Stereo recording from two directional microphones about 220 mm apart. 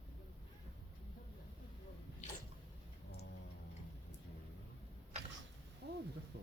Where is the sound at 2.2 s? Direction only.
35° left (ahead or behind).